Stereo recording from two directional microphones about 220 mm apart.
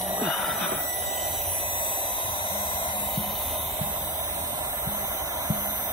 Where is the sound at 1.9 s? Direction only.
20° left (ahead or behind).